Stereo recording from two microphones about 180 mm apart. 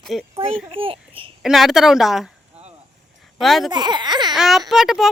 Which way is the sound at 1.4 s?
Centre (ahead or behind).